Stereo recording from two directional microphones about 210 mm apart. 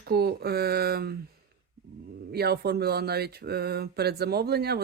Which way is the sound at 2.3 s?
50° right (ahead or behind).